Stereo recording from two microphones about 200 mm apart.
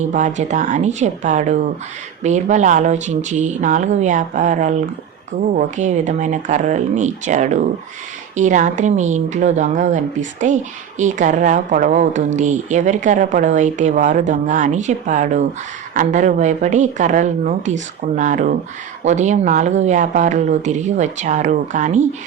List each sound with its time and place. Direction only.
0.1 s speech: 35° right (ahead or behind)